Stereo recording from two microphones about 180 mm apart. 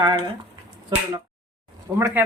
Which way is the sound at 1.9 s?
15° right (ahead or behind).